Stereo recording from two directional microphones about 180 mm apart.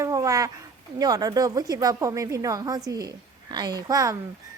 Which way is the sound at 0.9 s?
20° right (ahead or behind).